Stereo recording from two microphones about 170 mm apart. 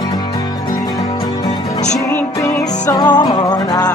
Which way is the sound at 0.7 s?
20° left (ahead or behind).